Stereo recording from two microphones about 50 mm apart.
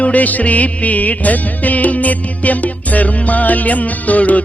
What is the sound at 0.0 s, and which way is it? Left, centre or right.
Music, left.